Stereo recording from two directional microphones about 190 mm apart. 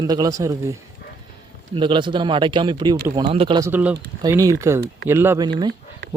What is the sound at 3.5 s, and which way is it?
Speech, 10° right (ahead or behind).